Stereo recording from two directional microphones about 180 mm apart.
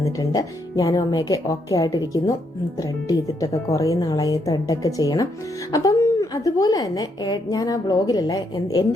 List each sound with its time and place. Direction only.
0.0 s a woman's voice: 20° left (ahead or behind)